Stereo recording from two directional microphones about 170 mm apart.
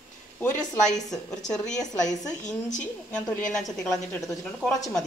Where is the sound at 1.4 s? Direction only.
5° left (ahead or behind).